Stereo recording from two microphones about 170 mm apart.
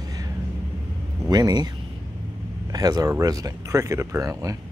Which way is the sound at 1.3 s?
25° right (ahead or behind).